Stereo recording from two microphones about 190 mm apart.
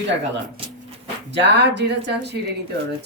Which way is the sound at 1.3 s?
65° right (ahead or behind).